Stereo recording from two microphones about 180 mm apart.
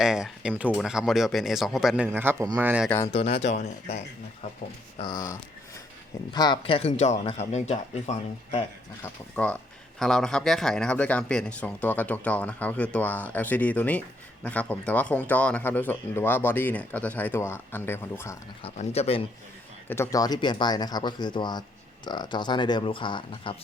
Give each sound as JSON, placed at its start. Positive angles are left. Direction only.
{"t": 0.0, "sound": "speech", "side_deg": -5}
{"t": 2.0, "sound": "a man's voice", "side_deg": -15}
{"t": 3.1, "sound": "speech", "side_deg": 35}
{"t": 4.9, "sound": "speech", "side_deg": 20}
{"t": 9.3, "sound": "speech", "side_deg": 5}
{"t": 18.6, "sound": "speech", "side_deg": 35}
{"t": 19.9, "sound": "speech", "side_deg": 15}